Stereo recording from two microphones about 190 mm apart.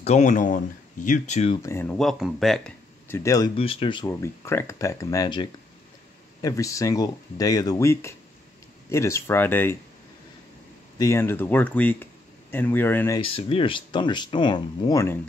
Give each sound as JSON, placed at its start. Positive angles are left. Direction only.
{"t": 0.0, "sound": "speech", "side_deg": 35}
{"t": 1.6, "sound": "speech", "side_deg": 15}
{"t": 3.1, "sound": "speech", "side_deg": 15}
{"t": 3.5, "sound": "speech", "side_deg": 30}
{"t": 4.1, "sound": "speech", "side_deg": 15}
{"t": 11.0, "sound": "speech", "side_deg": 15}
{"t": 13.2, "sound": "speech", "side_deg": 30}